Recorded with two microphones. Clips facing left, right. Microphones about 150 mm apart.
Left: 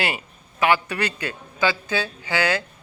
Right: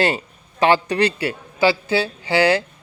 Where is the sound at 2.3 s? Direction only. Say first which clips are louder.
Right 7 dB; 30° right (ahead or behind).